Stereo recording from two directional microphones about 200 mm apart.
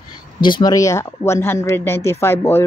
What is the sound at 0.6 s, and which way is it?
Speech, 15° left (ahead or behind).